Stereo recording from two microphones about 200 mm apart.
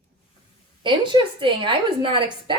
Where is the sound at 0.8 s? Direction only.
25° right (ahead or behind).